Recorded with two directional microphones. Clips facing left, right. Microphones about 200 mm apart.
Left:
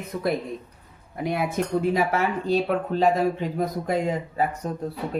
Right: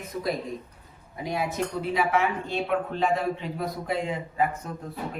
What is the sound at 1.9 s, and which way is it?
Speech, 40° left (ahead or behind).